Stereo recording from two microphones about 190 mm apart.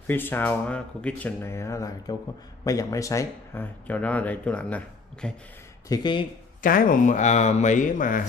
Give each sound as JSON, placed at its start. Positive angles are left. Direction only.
{"t": 0.0, "sound": "speech", "side_deg": 10}
{"t": 5.9, "sound": "speech", "side_deg": 25}
{"t": 6.6, "sound": "speech", "side_deg": 45}